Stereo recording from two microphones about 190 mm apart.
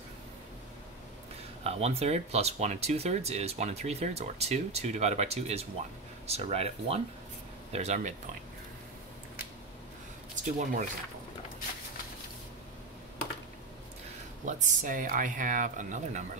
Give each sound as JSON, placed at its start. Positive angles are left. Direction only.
{"t": 1.6, "sound": "speech", "side_deg": -35}
{"t": 10.4, "sound": "speech", "side_deg": -40}
{"t": 14.4, "sound": "speech", "side_deg": -40}